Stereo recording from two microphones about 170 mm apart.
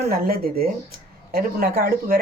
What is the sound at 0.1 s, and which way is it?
Speech, 60° right (ahead or behind).